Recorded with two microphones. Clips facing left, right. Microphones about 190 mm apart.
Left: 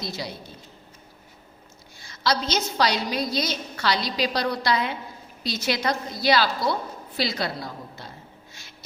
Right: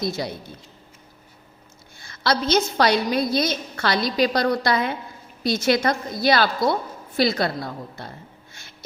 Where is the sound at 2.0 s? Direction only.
55° right (ahead or behind).